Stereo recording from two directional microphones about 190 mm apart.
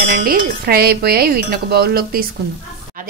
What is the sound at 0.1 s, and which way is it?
Speech, 50° right (ahead or behind).